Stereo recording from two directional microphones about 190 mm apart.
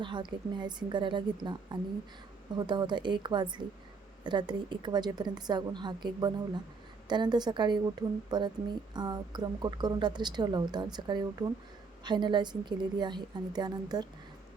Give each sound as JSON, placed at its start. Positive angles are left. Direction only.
{"t": 0.0, "sound": "a woman's voice", "side_deg": -25}